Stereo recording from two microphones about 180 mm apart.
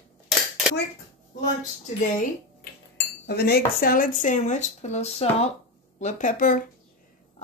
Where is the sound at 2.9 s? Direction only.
65° left (ahead or behind); by 5.5 s 35° left (ahead or behind).